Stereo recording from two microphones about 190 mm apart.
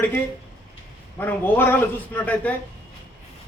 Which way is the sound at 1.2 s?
10° left (ahead or behind).